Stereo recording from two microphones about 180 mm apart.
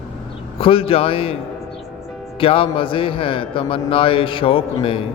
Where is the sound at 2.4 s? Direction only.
30° left (ahead or behind).